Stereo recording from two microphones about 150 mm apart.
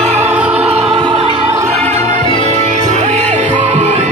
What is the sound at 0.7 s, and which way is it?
Music, 40° right (ahead or behind).